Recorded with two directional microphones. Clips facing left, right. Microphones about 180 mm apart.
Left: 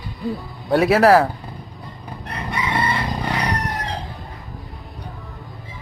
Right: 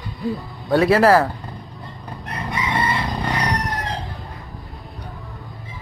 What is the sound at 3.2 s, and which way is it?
Crowing, centre (ahead or behind).